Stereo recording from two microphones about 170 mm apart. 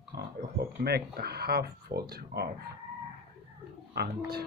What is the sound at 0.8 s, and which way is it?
Speech, 70° right (ahead or behind).